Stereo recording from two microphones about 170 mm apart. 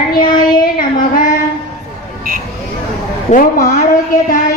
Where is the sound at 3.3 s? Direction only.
45° left (ahead or behind).